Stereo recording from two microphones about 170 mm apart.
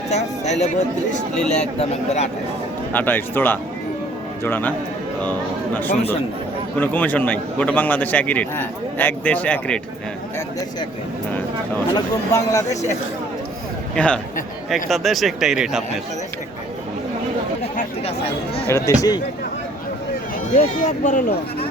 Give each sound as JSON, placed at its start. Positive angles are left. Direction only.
{"t": 0.1, "sound": "a sound", "side_deg": 40}
{"t": 1.5, "sound": "a man's voice", "side_deg": 40}
{"t": 2.9, "sound": "a man's voice", "side_deg": 10}
{"t": 11.9, "sound": "speech", "side_deg": 20}
{"t": 13.9, "sound": "a man's voice", "side_deg": 5}
{"t": 18.7, "sound": "speech", "side_deg": 20}
{"t": 20.6, "sound": "speech", "side_deg": 45}